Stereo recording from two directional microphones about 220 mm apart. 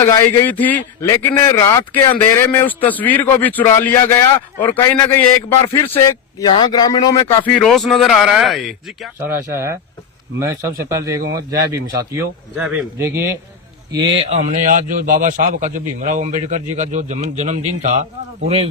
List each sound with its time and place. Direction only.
0.0 s a man's voice: 10° left (ahead or behind)
9.5 s speech: 10° right (ahead or behind)
10.8 s speech: 15° right (ahead or behind)
13.9 s a man's voice: 25° right (ahead or behind)